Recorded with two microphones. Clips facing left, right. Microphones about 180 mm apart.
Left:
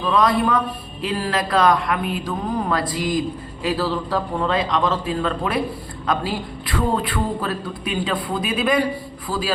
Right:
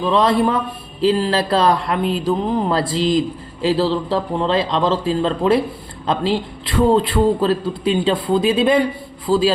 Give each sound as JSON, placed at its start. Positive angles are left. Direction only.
{"t": 0.0, "sound": "speech", "side_deg": -25}